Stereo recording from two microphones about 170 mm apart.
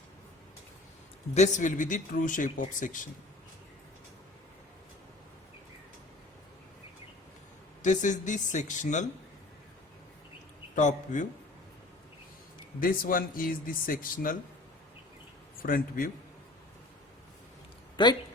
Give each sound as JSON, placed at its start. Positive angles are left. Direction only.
{"t": 1.3, "sound": "speech", "side_deg": 45}
{"t": 7.8, "sound": "speech", "side_deg": 45}
{"t": 10.8, "sound": "speech", "side_deg": 45}
{"t": 12.8, "sound": "speech", "side_deg": 55}
{"t": 15.6, "sound": "speech", "side_deg": 55}
{"t": 17.9, "sound": "speech", "side_deg": 25}